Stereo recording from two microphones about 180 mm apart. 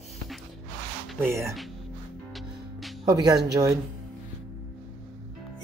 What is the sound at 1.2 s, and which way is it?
Speech, 15° right (ahead or behind).